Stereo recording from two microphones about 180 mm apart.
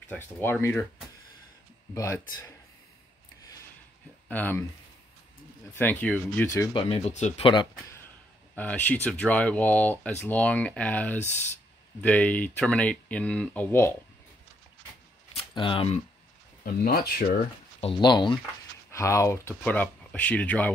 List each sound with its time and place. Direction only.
0.1 s speech: 10° left (ahead or behind)
4.3 s speech: 10° left (ahead or behind)
5.8 s speech: 10° left (ahead or behind)
6.7 s speech: 35° left (ahead or behind)
8.5 s speech: 10° left (ahead or behind)
15.5 s speech: 30° left (ahead or behind)
16.6 s speech: 55° left (ahead or behind)
17.7 s speech: 30° left (ahead or behind); by 20.7 s 5° left (ahead or behind)